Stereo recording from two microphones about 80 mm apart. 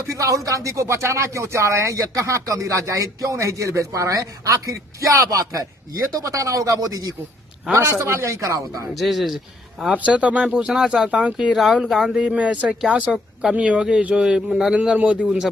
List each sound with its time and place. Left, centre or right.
0.0 s speech: right
7.7 s a man's voice: right
9.0 s speech: centre
9.9 s speech: centre
11.5 s speech: centre